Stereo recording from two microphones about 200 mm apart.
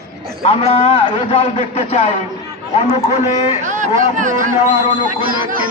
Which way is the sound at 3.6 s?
40° right (ahead or behind).